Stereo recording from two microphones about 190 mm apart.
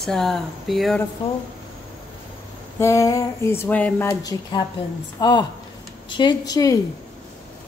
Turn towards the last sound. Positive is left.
turn(degrees=20)  # may be behind; listen again after turning